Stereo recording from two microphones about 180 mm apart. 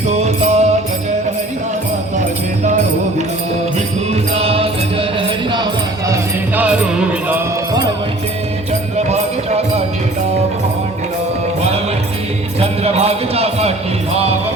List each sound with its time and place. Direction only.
0.3 s music: 40° right (ahead or behind)
4.1 s music: 35° right (ahead or behind)
6.6 s music: 5° right (ahead or behind)
9.0 s music: 35° right (ahead or behind)
12.5 s music: 35° right (ahead or behind)